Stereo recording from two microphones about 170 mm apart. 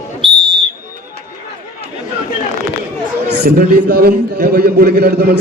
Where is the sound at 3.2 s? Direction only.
70° right (ahead or behind).